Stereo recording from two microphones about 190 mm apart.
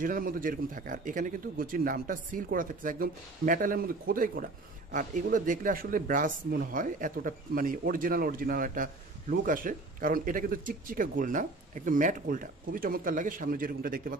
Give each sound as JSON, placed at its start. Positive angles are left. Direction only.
{"t": 0.0, "sound": "speech", "side_deg": -45}